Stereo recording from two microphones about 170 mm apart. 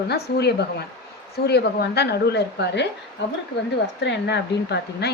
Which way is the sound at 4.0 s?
90° left.